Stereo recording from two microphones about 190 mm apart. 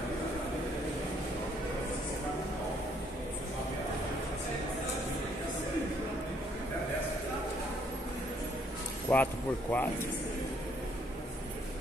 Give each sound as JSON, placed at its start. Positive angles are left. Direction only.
{"t": 9.1, "sound": "speech", "side_deg": 10}